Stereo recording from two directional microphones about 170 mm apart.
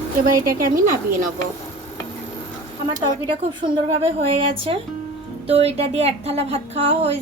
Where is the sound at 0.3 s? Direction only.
55° right (ahead or behind).